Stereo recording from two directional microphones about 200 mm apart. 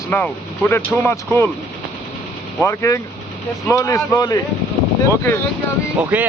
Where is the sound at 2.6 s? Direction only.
15° left (ahead or behind).